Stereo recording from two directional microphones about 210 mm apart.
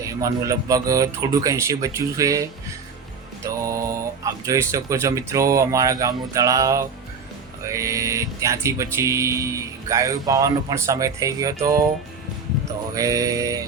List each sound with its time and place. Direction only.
0.0 s music: 15° right (ahead or behind)
12.9 s music: 15° right (ahead or behind)